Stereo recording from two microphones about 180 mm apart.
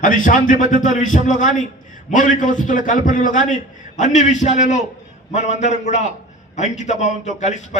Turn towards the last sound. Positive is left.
turn(degrees=40)  # may be behind; listen again after turning